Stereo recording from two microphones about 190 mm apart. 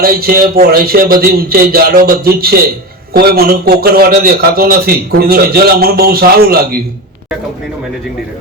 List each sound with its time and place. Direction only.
0.0 s a man's voice: 50° right (ahead or behind)